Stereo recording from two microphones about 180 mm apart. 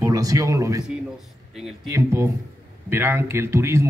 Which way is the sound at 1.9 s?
15° right (ahead or behind).